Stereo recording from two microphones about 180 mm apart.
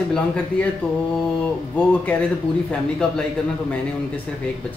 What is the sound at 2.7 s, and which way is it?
Speech, 5° left (ahead or behind).